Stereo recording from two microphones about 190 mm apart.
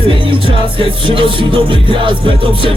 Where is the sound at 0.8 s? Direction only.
25° right (ahead or behind).